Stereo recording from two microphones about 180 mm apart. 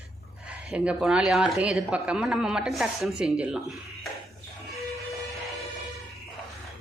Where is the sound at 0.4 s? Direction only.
5° right (ahead or behind).